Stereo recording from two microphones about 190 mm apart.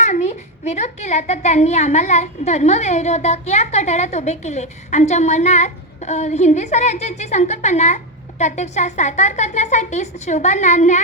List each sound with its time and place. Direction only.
0.0 s a woman's voice: 35° left (ahead or behind)